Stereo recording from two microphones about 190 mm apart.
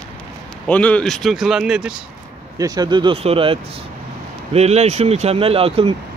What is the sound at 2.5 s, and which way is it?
Speech, 20° right (ahead or behind).